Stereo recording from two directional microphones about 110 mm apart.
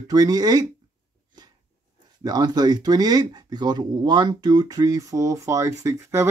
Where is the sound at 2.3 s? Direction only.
35° right (ahead or behind).